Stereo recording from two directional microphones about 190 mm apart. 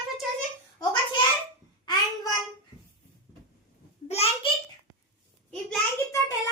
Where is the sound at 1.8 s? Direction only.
20° left (ahead or behind).